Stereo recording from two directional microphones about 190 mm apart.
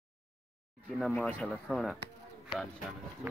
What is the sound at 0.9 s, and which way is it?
Speech, centre (ahead or behind).